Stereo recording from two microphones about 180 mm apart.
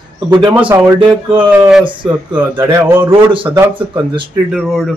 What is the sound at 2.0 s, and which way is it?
Speech, 10° right (ahead or behind).